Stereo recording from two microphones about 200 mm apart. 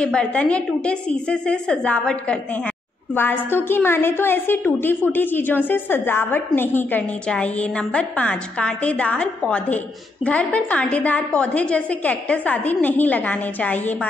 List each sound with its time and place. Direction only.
0.0 s a woman's voice: 5° left (ahead or behind)